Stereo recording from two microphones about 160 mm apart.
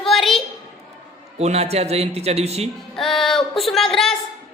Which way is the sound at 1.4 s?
40° right (ahead or behind).